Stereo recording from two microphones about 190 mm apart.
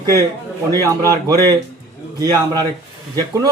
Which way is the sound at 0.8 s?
15° right (ahead or behind).